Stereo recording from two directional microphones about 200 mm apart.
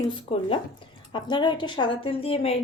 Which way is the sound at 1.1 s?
25° left (ahead or behind).